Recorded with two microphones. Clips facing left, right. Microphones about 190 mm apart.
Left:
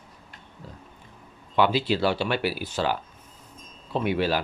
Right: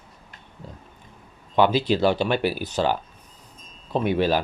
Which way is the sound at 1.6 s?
20° right (ahead or behind).